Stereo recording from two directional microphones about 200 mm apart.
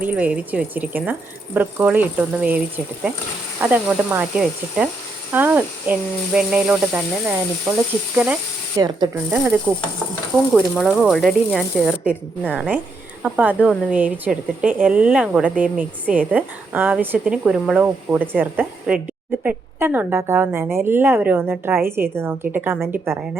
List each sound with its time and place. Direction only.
0.0 s a woman's voice: 5° right (ahead or behind)
8.7 s a woman's voice: 15° right (ahead or behind)
9.3 s speech: 5° right (ahead or behind)
12.5 s a woman's voice: 5° right (ahead or behind)